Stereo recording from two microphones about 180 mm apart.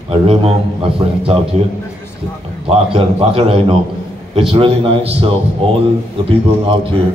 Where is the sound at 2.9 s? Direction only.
30° right (ahead or behind).